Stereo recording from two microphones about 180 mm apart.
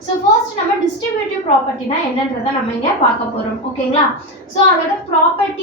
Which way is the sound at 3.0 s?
35° left (ahead or behind).